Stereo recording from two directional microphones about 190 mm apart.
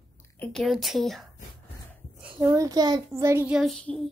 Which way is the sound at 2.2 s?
5° right (ahead or behind).